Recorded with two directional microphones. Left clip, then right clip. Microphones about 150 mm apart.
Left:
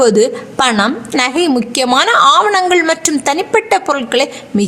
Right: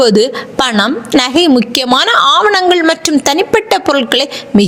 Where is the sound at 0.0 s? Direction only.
30° right (ahead or behind).